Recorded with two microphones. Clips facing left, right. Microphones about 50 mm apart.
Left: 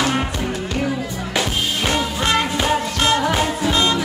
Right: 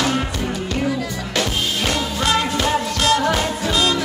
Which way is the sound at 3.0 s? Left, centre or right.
Left.